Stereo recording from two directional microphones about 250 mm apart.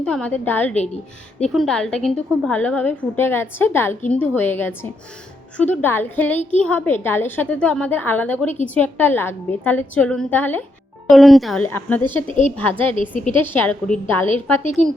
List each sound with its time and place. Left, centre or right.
0.0 s a woman's voice: centre
12.3 s a woman's voice: left
12.5 s a woman's voice: centre
13.0 s a woman's voice: left
13.4 s a woman's voice: centre
14.6 s a woman's voice: left